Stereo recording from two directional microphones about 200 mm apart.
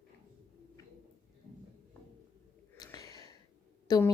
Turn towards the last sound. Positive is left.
turn(degrees=20)  # may be behind; listen again after turning